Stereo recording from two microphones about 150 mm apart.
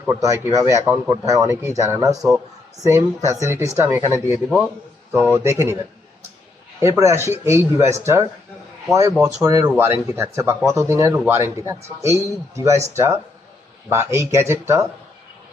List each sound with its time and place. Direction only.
0.1 s a man's voice: 20° right (ahead or behind)
3.2 s a man's voice: 20° right (ahead or behind)
4.4 s a man's voice: 5° right (ahead or behind)
5.4 s speech: 15° right (ahead or behind)
6.7 s a man's voice: 20° right (ahead or behind)